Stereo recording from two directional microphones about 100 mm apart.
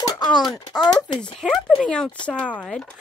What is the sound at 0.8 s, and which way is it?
Speech, 50° left (ahead or behind).